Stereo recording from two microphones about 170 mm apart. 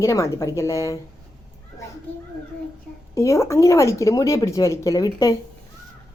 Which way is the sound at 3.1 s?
20° left (ahead or behind).